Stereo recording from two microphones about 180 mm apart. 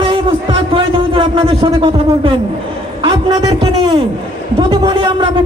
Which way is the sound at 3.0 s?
30° right (ahead or behind).